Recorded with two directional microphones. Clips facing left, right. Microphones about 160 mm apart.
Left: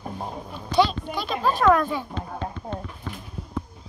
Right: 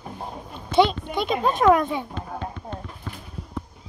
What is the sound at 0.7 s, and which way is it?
A child's voice, 20° right (ahead or behind).